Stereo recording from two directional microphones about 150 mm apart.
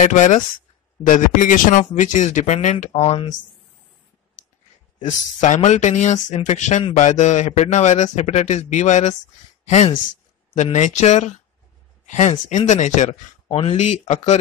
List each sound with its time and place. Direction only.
0.0 s speech: 55° left (ahead or behind)
5.0 s speech: 50° left (ahead or behind)
13.5 s speech: 40° left (ahead or behind)